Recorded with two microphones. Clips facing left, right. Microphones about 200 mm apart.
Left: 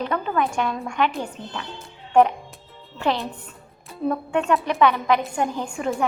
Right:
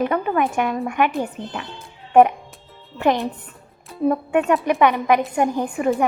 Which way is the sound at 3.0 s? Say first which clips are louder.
Right 5 dB; 15° right (ahead or behind).